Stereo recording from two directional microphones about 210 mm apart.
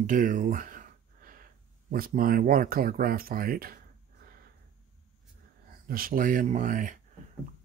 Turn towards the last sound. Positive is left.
turn(degrees=-40)  # may be behind; listen again after turning